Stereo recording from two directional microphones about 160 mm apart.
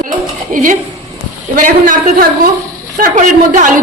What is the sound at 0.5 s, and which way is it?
A man's voice, 55° right (ahead or behind).